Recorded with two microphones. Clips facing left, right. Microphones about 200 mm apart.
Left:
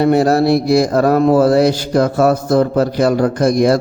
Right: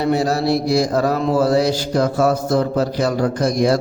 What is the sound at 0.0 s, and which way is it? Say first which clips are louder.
A man's voice: left 6 dB; 55° left (ahead or behind).